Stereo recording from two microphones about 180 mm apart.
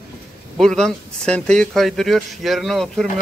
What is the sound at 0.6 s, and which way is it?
Speech, 5° left (ahead or behind).